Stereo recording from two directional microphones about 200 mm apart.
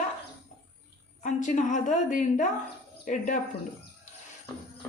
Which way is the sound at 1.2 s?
40° left (ahead or behind).